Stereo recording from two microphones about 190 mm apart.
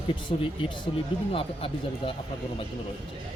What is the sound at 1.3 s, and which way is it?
Speech, 30° left (ahead or behind).